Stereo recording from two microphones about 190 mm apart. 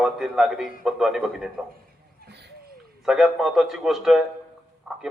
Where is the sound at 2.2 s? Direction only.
60° right (ahead or behind).